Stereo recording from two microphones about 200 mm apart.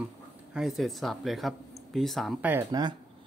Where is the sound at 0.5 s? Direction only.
Centre (ahead or behind).